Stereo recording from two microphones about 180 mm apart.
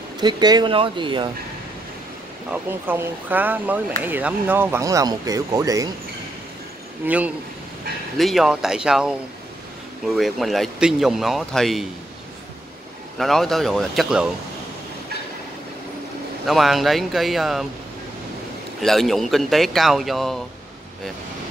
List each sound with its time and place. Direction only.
0.2 s speech: 25° right (ahead or behind)
2.5 s speech: 10° right (ahead or behind)
7.0 s speech: 10° right (ahead or behind)
8.2 s speech: centre (ahead or behind)
13.2 s speech: centre (ahead or behind)
16.4 s speech: centre (ahead or behind)
18.8 s speech: centre (ahead or behind)